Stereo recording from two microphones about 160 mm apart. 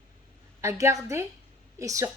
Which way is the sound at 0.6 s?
20° right (ahead or behind).